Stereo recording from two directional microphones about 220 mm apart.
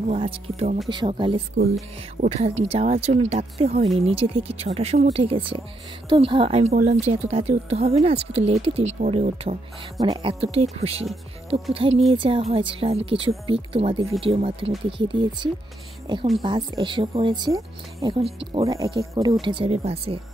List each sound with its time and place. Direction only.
0.1 s speech: 25° right (ahead or behind)
6.7 s speech: 40° right (ahead or behind)
7.1 s speech: 25° right (ahead or behind)
9.9 s speech: 20° right (ahead or behind)
18.7 s speech: 15° right (ahead or behind)